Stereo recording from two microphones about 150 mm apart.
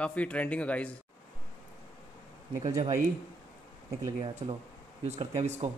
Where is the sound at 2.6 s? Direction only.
50° right (ahead or behind).